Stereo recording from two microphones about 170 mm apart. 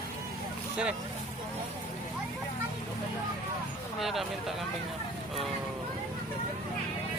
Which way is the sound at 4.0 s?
Centre (ahead or behind).